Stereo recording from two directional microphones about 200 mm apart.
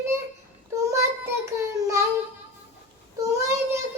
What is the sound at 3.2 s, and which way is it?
Child singing, 15° right (ahead or behind).